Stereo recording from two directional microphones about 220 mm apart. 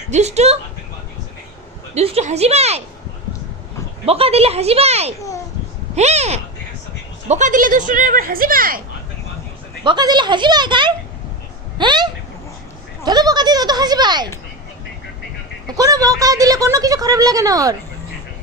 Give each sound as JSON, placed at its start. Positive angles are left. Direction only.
{"t": 0.1, "sound": "a woman's voice", "side_deg": -30}
{"t": 2.0, "sound": "a woman's voice", "side_deg": -30}
{"t": 4.0, "sound": "a woman's voice", "side_deg": -25}
{"t": 9.8, "sound": "a woman's voice", "side_deg": -20}
{"t": 13.0, "sound": "a sound", "side_deg": -20}
{"t": 15.8, "sound": "speech", "side_deg": -15}